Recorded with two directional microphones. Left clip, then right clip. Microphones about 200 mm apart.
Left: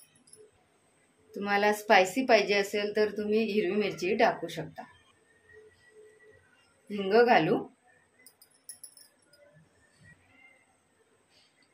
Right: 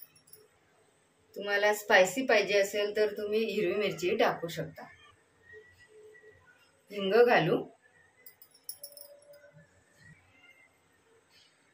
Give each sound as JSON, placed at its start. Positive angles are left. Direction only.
{"t": 1.4, "sound": "a woman's voice", "side_deg": 40}
{"t": 7.1, "sound": "a woman's voice", "side_deg": 40}